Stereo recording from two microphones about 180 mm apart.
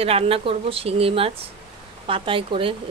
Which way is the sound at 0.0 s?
35° right (ahead or behind).